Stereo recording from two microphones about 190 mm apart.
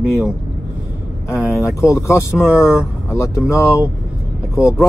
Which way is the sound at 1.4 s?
5° right (ahead or behind).